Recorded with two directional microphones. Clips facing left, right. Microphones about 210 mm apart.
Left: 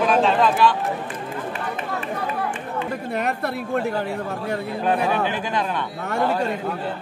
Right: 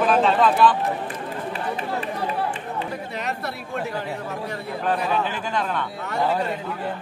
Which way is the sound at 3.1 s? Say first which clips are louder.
Left 5 dB; 55° left (ahead or behind).